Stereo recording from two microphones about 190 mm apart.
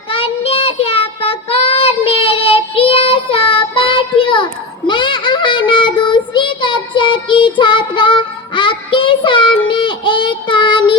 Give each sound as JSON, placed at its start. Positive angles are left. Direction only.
{"t": 0.1, "sound": "child singing", "side_deg": 30}